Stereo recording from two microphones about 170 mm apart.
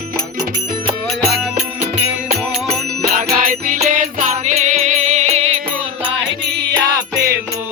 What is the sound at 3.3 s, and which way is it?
Music, 55° right (ahead or behind).